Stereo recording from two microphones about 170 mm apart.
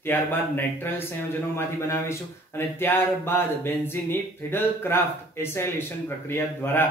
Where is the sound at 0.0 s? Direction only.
10° left (ahead or behind).